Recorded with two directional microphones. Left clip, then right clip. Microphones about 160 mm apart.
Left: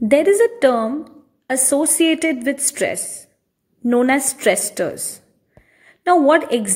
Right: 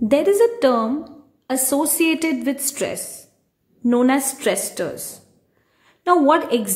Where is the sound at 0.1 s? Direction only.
20° left (ahead or behind).